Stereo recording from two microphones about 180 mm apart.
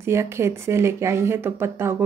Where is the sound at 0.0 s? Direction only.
15° right (ahead or behind).